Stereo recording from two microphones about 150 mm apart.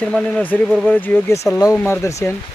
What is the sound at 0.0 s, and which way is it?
Speech, 5° left (ahead or behind).